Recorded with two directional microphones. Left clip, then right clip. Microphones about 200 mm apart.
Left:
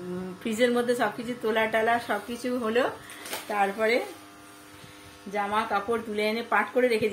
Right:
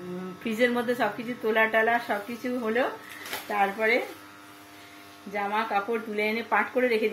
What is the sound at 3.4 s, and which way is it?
Speech, 5° left (ahead or behind).